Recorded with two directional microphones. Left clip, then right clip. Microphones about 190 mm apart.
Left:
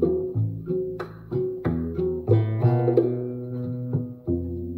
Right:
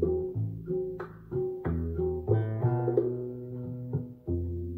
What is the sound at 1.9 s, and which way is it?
Music, 30° left (ahead or behind).